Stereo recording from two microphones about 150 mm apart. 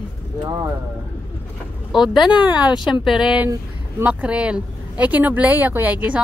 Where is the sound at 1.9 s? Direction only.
Centre (ahead or behind).